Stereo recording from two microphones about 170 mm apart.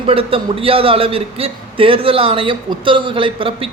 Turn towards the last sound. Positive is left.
turn(degrees=-30)  # may be behind; listen again after turning